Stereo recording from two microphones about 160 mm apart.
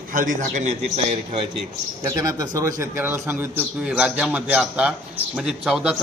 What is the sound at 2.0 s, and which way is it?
A man's voice, 20° right (ahead or behind).